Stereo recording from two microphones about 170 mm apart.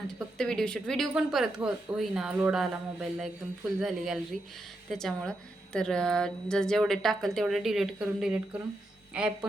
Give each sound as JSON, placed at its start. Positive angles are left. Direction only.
{"t": 0.3, "sound": "a woman's voice", "side_deg": 5}